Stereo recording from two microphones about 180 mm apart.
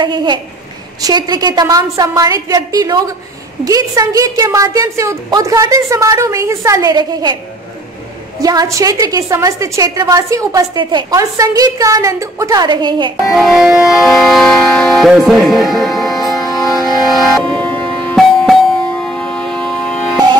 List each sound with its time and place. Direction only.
0.0 s a woman's voice: 25° right (ahead or behind)
8.4 s a woman's voice: 20° right (ahead or behind)
13.2 s music: centre (ahead or behind)